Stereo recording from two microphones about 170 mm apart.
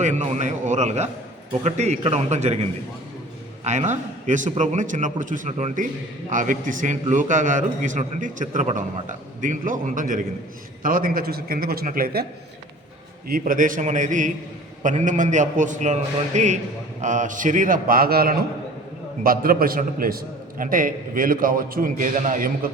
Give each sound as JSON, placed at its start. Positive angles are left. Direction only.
{"t": 0.0, "sound": "a man's voice", "side_deg": -45}